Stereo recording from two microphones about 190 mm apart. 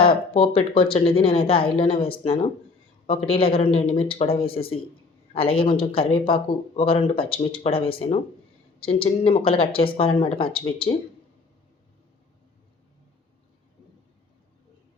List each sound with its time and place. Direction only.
0.0 s speech: 30° left (ahead or behind)